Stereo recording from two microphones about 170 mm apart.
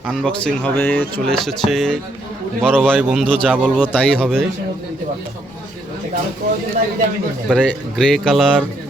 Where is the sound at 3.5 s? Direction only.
5° right (ahead or behind).